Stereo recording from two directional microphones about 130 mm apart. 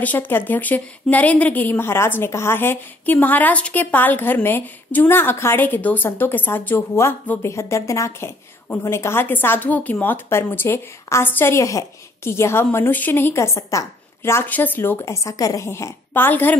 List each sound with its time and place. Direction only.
0.0 s a woman's voice: 10° left (ahead or behind)